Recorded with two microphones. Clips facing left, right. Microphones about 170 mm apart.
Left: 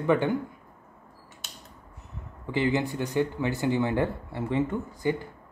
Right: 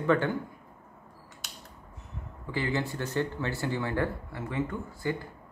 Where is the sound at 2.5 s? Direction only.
20° left (ahead or behind).